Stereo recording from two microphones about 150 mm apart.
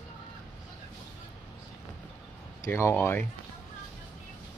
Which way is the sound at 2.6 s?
20° left (ahead or behind).